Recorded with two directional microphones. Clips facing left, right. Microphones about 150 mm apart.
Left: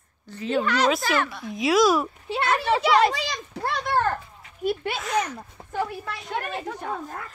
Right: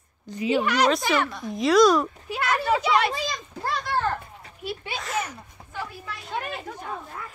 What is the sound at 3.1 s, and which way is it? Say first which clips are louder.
Children playing: even; 75° left (ahead or behind).